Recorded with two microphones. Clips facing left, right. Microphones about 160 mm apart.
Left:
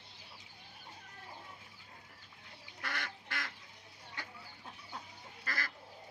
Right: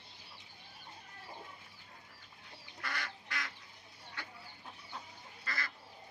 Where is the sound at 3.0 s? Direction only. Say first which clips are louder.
Even; 50° left (ahead or behind).